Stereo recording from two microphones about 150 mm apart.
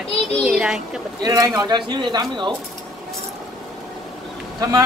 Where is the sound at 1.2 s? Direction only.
25° right (ahead or behind).